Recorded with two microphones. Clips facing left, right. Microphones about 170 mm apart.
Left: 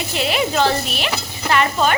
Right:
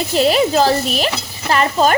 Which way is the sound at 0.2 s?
35° right (ahead or behind).